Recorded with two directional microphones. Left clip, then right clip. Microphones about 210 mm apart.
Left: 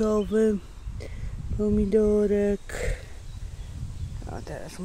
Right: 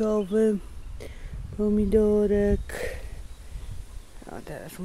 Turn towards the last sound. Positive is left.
turn(degrees=0)  # may be behind; listen again after turning